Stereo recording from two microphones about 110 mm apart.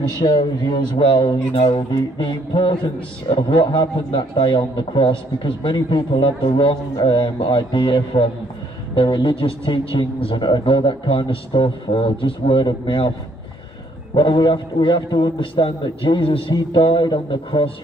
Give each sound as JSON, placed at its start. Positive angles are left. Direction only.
{"t": 0.2, "sound": "speech", "side_deg": 45}
{"t": 14.1, "sound": "speech", "side_deg": 50}